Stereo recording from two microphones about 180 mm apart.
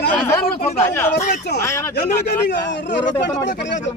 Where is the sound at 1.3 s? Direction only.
65° left (ahead or behind).